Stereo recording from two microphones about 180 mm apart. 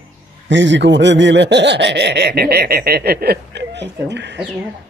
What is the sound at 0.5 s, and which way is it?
Speech, 90° right.